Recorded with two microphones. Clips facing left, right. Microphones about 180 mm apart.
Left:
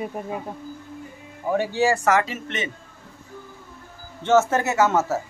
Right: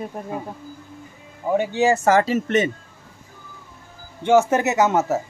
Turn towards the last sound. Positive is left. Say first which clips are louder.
# right 2 dB
turn(degrees=-20)  # may be behind; listen again after turning